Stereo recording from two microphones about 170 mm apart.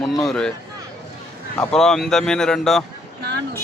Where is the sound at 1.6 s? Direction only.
5° left (ahead or behind).